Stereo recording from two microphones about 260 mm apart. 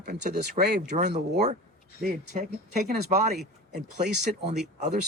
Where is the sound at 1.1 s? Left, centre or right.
Right.